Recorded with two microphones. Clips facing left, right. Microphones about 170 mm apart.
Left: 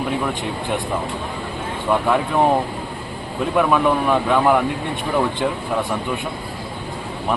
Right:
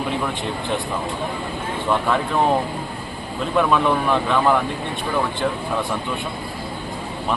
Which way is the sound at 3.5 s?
10° left (ahead or behind).